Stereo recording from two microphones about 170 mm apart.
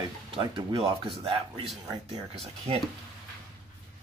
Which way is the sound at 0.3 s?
30° right (ahead or behind).